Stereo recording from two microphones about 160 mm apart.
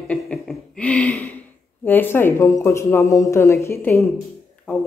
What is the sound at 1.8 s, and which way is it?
Speech, 10° left (ahead or behind).